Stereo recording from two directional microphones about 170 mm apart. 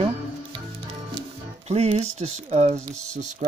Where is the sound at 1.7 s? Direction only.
40° right (ahead or behind).